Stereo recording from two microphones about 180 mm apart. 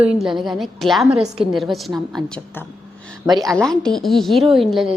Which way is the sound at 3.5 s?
5° left (ahead or behind).